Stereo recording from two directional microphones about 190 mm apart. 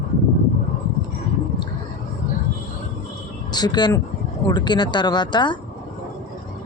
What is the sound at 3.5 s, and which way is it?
Speech, 20° left (ahead or behind).